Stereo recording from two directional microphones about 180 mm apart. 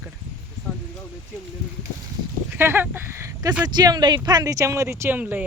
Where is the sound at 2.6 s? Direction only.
10° right (ahead or behind).